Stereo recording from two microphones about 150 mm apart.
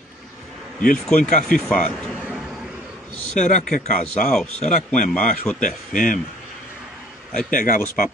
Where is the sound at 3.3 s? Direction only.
55° left (ahead or behind).